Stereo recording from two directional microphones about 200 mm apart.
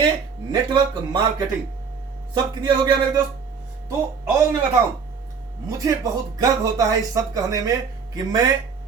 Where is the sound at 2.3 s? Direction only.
20° right (ahead or behind).